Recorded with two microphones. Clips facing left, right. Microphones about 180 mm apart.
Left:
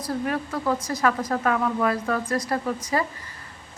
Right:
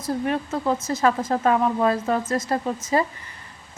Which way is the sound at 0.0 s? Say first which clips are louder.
Right 2 dB; 25° right (ahead or behind).